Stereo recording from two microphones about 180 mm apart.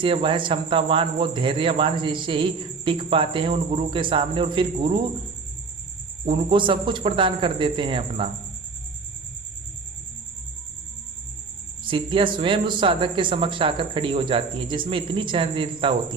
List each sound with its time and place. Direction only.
0.0 s speech: 30° right (ahead or behind)
6.3 s speech: 25° right (ahead or behind)
11.9 s speech: 30° right (ahead or behind)